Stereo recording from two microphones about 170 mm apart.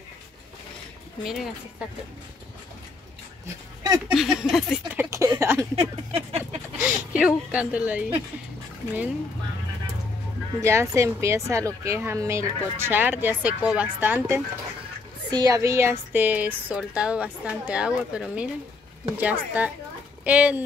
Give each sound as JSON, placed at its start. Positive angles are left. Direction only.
{"t": 1.2, "sound": "speech", "side_deg": 0}
{"t": 4.1, "sound": "speech", "side_deg": -5}
{"t": 6.1, "sound": "a sound", "side_deg": -35}
{"t": 6.8, "sound": "speech", "side_deg": -5}
{"t": 10.6, "sound": "a woman's voice", "side_deg": -15}